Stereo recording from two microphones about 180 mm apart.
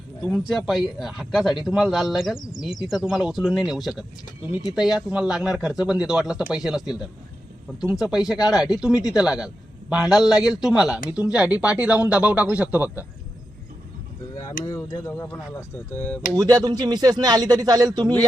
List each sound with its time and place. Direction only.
0.3 s speech: 5° right (ahead or behind)
7.9 s speech: 5° right (ahead or behind)
14.6 s speech: 20° left (ahead or behind)
16.3 s speech: 20° right (ahead or behind)